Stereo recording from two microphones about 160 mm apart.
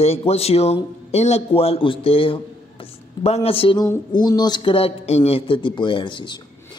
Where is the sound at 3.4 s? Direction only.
35° left (ahead or behind).